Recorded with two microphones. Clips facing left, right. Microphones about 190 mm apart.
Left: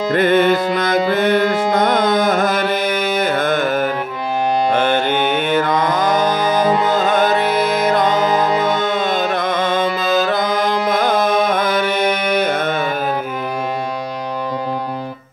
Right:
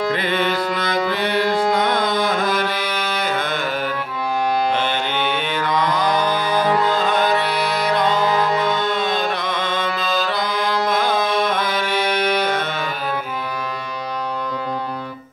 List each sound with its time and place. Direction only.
0.1 s music: 50° left (ahead or behind)
4.7 s mantra: 50° left (ahead or behind)
6.6 s music: 20° left (ahead or behind)
6.9 s music: 45° left (ahead or behind)
8.2 s music: 20° left (ahead or behind)
8.6 s music: 45° left (ahead or behind)